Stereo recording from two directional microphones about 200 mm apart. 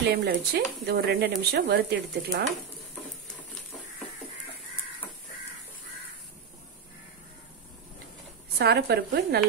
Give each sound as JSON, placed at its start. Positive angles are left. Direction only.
{"t": 0.0, "sound": "a woman's voice", "side_deg": -55}
{"t": 8.5, "sound": "a woman's voice", "side_deg": -55}